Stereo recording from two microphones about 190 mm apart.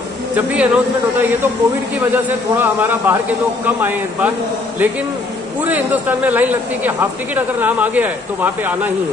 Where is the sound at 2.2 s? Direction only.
10° right (ahead or behind).